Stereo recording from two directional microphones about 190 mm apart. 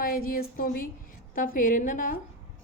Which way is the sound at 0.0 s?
50° left (ahead or behind).